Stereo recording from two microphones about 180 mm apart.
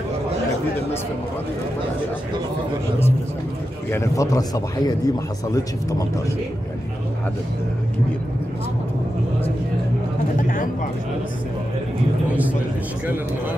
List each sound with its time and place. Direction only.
3.9 s speech: 15° left (ahead or behind)